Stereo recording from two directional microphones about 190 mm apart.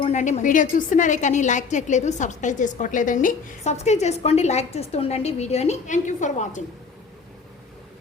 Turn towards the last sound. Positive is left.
turn(degrees=40)  # may be behind; listen again after turning